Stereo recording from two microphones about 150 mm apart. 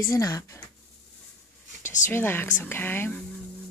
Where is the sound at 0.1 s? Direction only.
25° left (ahead or behind).